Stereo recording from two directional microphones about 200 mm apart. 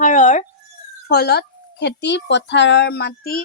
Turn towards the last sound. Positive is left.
turn(degrees=50)  # may be behind; listen again after turning